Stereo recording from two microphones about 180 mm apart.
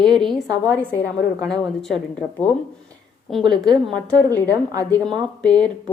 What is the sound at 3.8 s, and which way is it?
A woman's voice, 5° left (ahead or behind).